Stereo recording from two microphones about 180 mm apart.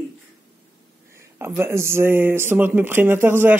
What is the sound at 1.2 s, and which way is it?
Speech, 15° right (ahead or behind).